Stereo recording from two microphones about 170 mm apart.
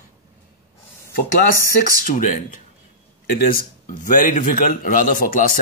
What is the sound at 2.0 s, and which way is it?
A man's voice, 50° left (ahead or behind).